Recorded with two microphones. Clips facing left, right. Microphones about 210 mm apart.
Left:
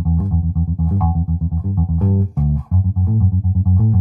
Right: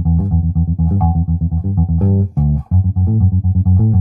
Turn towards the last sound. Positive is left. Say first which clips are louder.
# right 3 dB
turn(degrees=-40)  # may be behind; listen again after turning